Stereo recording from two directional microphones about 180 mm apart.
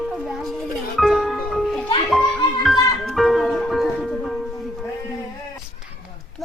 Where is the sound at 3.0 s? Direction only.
Centre (ahead or behind).